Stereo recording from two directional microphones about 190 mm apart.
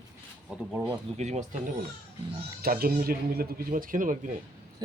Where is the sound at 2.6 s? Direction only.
50° right (ahead or behind).